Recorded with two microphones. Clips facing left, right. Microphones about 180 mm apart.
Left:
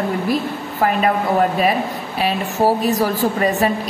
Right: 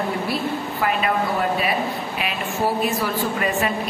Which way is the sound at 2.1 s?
35° left (ahead or behind).